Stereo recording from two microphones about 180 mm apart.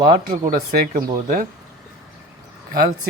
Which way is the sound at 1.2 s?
45° right (ahead or behind).